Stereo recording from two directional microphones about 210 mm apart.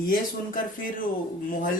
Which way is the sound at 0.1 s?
40° left (ahead or behind).